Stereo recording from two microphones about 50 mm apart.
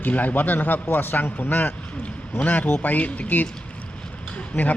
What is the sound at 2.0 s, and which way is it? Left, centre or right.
A man's voice, left.